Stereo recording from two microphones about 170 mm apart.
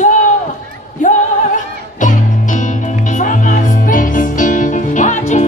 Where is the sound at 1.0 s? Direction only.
50° left (ahead or behind).